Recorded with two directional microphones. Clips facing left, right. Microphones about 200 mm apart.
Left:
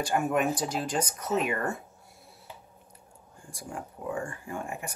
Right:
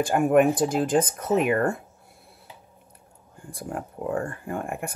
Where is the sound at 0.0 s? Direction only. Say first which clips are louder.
Right 8 dB; 55° right (ahead or behind).